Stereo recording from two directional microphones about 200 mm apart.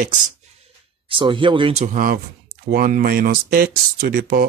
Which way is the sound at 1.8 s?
40° right (ahead or behind).